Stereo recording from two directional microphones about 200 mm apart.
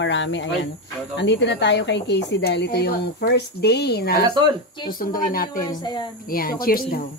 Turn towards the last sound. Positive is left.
turn(degrees=45)  # may be behind; listen again after turning